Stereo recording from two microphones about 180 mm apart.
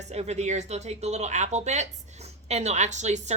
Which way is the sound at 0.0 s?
40° right (ahead or behind).